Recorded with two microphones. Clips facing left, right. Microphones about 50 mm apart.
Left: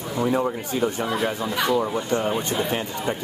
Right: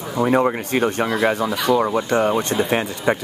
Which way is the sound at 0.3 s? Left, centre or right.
Right.